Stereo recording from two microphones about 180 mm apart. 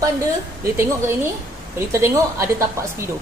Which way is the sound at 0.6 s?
15° right (ahead or behind).